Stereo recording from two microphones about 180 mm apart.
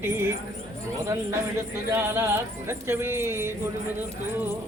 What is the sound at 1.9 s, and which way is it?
Speech, 15° right (ahead or behind).